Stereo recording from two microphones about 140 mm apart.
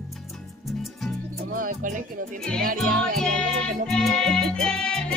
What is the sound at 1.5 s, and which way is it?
Music, 75° right (ahead or behind).